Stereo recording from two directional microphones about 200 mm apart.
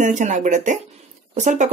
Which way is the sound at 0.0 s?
35° right (ahead or behind).